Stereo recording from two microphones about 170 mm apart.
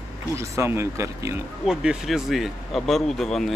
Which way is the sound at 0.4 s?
15° right (ahead or behind).